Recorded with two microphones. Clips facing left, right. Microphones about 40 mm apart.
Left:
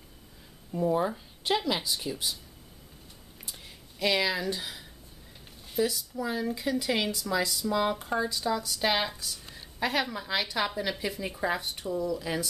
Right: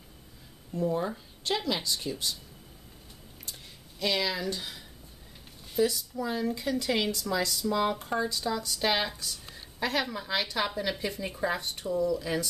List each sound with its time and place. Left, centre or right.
0.7 s speech: centre
4.0 s speech: centre